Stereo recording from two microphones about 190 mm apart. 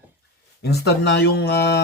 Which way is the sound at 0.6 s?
60° left (ahead or behind).